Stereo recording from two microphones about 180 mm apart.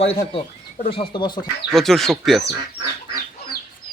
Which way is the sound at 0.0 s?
30° left (ahead or behind).